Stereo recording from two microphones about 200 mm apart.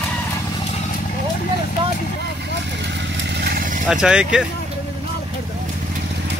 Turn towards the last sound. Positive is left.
turn(degrees=-5)  # may be behind; listen again after turning